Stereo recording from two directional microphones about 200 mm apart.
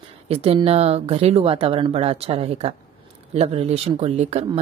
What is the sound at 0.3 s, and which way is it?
Speech, 30° right (ahead or behind).